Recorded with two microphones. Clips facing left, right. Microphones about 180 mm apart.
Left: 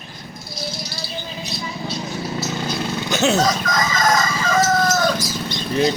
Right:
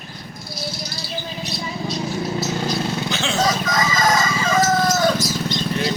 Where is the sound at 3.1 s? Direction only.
45° left (ahead or behind).